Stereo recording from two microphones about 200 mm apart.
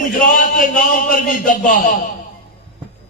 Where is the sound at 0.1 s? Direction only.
45° left (ahead or behind).